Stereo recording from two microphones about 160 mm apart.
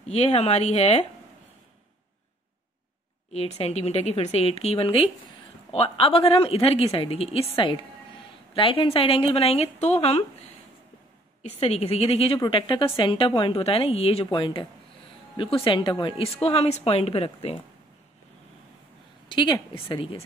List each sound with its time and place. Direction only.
0.1 s a woman's voice: 40° left (ahead or behind)
3.3 s a woman's voice: 40° left (ahead or behind)
11.4 s a woman's voice: 40° left (ahead or behind)
19.2 s a woman's voice: 30° left (ahead or behind)